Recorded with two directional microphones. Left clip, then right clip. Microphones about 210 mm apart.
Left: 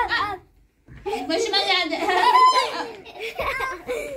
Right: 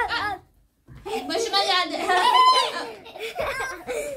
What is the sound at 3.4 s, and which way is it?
Giggle, 10° right (ahead or behind).